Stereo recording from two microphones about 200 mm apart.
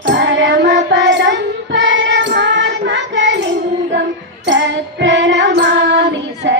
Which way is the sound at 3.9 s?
60° right (ahead or behind).